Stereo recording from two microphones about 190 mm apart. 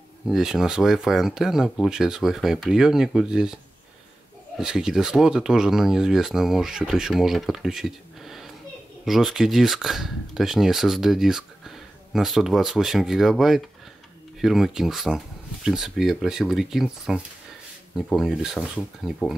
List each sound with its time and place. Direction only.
0.3 s speech: centre (ahead or behind)
4.6 s speech: 5° right (ahead or behind)